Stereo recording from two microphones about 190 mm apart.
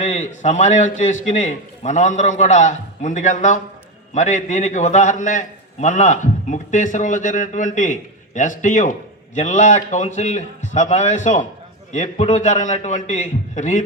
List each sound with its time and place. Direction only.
0.0 s a man's voice: 40° left (ahead or behind)